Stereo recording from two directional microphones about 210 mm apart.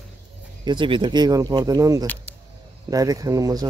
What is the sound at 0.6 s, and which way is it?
Speech, 20° right (ahead or behind).